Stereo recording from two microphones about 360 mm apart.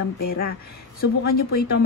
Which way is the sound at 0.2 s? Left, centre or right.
Left.